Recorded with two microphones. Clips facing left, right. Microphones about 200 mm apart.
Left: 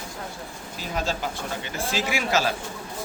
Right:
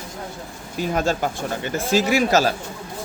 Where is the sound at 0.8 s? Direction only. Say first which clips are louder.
Right 7 dB; 50° right (ahead or behind).